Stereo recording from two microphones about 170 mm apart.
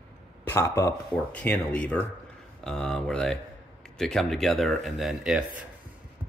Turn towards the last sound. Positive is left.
turn(degrees=-5)  # may be behind; listen again after turning